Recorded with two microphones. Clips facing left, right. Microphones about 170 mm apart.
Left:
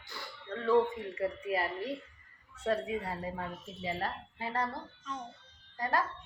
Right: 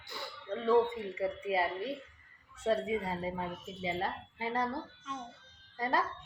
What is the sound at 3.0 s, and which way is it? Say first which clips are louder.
A woman's voice: right 2 dB; 20° right (ahead or behind).